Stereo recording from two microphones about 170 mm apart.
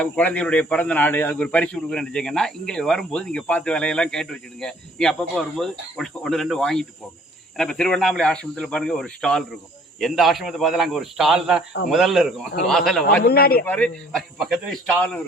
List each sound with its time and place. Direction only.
0.0 s speech: 10° left (ahead or behind)
13.2 s speech: 65° left (ahead or behind)
13.7 s a man's voice: 10° left (ahead or behind)
14.3 s speech: centre (ahead or behind)